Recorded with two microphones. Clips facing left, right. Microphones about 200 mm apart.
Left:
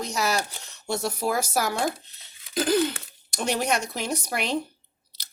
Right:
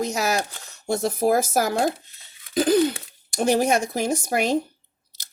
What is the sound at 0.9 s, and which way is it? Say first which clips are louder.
Speech: right 6 dB; 50° right (ahead or behind).